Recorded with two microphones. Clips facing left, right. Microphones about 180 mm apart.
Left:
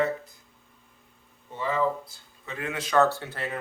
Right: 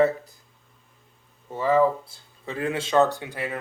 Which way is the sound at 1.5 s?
40° right (ahead or behind).